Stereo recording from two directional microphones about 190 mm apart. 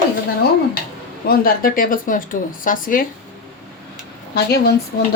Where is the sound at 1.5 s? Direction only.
50° left (ahead or behind).